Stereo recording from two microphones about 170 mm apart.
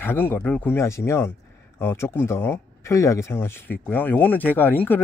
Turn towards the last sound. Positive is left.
turn(degrees=10)  # may be behind; listen again after turning